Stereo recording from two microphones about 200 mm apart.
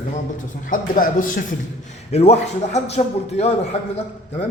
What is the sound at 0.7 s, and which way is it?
A man's voice, 40° left (ahead or behind).